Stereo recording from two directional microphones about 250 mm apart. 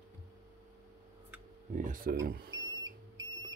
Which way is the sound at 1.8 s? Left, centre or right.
Right.